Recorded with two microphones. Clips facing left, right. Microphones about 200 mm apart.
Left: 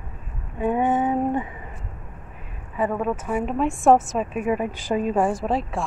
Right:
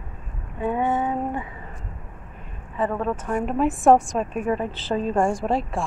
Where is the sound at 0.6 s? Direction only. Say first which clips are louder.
Left 2 dB; 15° left (ahead or behind).